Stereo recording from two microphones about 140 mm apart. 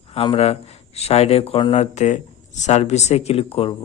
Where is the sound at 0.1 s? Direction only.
45° left (ahead or behind).